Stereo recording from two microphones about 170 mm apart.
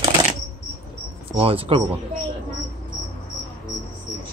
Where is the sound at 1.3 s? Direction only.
35° right (ahead or behind).